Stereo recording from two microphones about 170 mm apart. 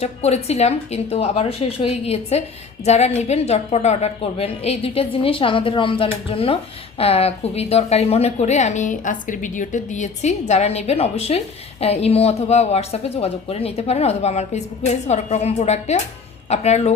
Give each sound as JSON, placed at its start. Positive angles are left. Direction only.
{"t": 0.0, "sound": "a woman's voice", "side_deg": 40}